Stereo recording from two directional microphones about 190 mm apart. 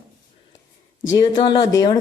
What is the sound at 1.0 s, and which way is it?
Speech, 20° left (ahead or behind).